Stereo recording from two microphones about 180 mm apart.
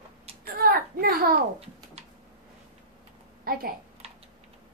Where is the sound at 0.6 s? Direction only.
55° right (ahead or behind).